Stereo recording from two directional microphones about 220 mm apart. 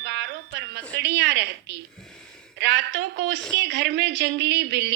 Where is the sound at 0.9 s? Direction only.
50° right (ahead or behind).